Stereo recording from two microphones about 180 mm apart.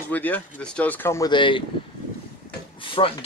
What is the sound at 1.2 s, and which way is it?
Speech, 25° left (ahead or behind).